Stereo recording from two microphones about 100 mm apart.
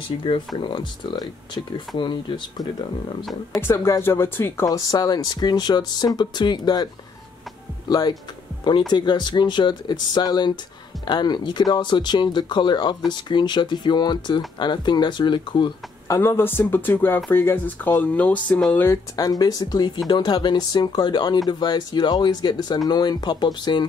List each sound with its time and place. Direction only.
0.6 s speech: 55° left (ahead or behind)
3.6 s speech: 30° left (ahead or behind)
4.6 s speech: 35° left (ahead or behind)
7.9 s speech: 40° left (ahead or behind)
16.1 s speech: 25° left (ahead or behind)
19.1 s speech: 40° left (ahead or behind)